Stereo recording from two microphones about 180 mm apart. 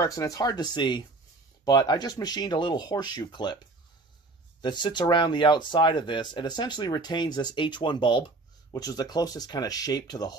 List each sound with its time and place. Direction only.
0.0 s speech: 20° left (ahead or behind)
4.6 s speech: 25° left (ahead or behind)